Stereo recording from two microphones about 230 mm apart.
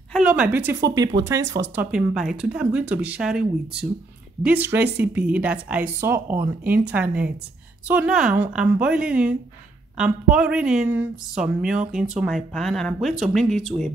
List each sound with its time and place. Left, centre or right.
0.1 s a woman's voice: centre
1.8 s a woman's voice: centre